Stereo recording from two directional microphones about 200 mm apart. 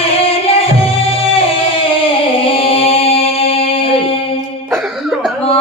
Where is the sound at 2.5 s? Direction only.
30° left (ahead or behind).